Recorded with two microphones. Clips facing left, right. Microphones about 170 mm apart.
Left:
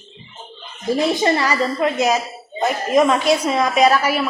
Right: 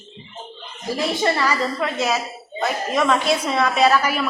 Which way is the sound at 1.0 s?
15° left (ahead or behind).